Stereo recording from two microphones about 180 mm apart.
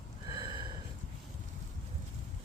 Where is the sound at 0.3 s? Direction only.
25° right (ahead or behind).